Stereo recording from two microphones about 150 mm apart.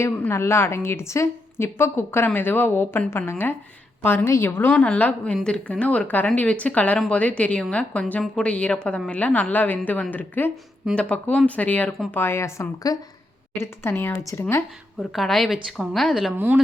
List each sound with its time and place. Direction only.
0.0 s a woman's voice: 15° left (ahead or behind)
15.1 s speech: centre (ahead or behind)